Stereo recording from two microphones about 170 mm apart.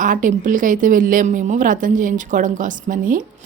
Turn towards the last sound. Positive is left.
turn(degrees=-50)  # may be behind; listen again after turning